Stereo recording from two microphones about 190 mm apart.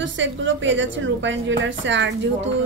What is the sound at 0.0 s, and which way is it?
A woman's voice, 75° right (ahead or behind).